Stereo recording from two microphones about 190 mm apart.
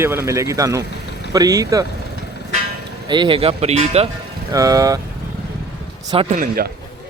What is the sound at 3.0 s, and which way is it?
Speech, 25° right (ahead or behind).